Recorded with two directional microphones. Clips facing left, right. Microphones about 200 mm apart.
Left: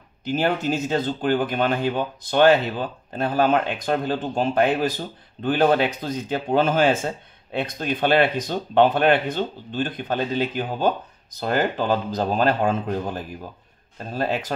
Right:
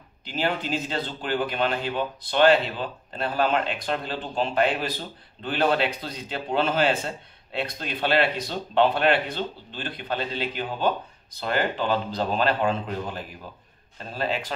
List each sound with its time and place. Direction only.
0.2 s speech: 45° left (ahead or behind)